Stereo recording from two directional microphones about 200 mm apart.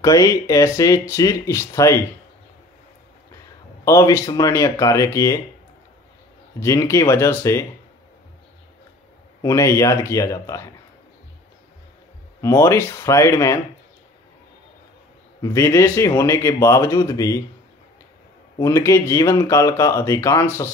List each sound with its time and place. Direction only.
0.0 s speech: 15° left (ahead or behind)
3.8 s speech: 15° left (ahead or behind)
6.6 s speech: 15° left (ahead or behind)
9.4 s speech: 15° left (ahead or behind)
12.4 s speech: 15° left (ahead or behind)
15.4 s speech: 15° left (ahead or behind)
18.6 s speech: 15° left (ahead or behind)